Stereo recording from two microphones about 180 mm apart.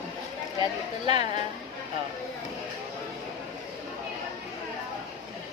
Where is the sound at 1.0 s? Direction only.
25° right (ahead or behind).